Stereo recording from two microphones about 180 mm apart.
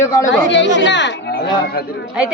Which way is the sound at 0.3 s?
80° left.